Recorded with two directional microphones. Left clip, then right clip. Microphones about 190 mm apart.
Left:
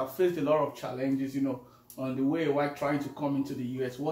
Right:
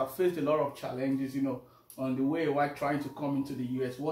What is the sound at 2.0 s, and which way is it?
Speech, 10° right (ahead or behind).